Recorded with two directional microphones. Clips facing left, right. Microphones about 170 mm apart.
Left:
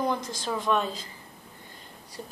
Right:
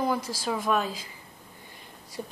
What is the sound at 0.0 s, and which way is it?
A woman's voice, 5° right (ahead or behind).